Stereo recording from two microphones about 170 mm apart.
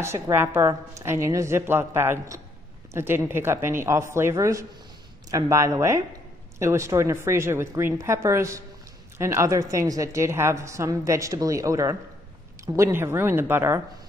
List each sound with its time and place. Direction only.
0.0 s a woman's voice: 15° right (ahead or behind)